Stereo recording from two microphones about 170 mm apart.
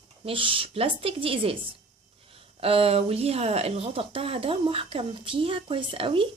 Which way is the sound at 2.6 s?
35° right (ahead or behind).